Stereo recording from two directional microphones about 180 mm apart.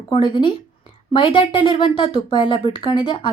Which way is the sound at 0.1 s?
25° left (ahead or behind).